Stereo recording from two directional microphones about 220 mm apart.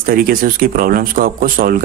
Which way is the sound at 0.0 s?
40° right (ahead or behind).